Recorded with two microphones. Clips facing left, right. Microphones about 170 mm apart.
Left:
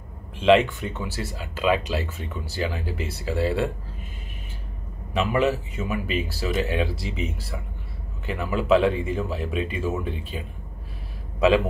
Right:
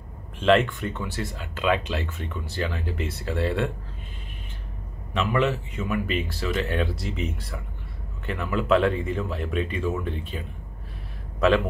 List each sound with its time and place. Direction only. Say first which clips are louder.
0.4 s speech: left 2 dB; 5° left (ahead or behind)
5.1 s speech: left 2 dB; 5° left (ahead or behind)